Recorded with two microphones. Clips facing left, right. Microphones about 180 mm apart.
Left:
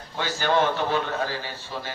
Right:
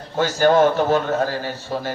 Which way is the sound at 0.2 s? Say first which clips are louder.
Right 8 dB; 45° right (ahead or behind).